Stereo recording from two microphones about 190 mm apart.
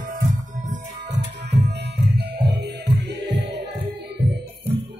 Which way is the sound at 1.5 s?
65° right (ahead or behind).